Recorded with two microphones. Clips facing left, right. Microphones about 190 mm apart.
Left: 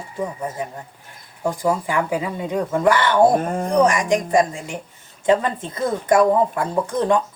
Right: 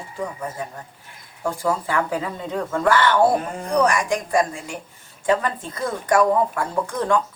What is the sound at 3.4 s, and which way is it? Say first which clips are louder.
Speech: left 6 dB; 45° left (ahead or behind).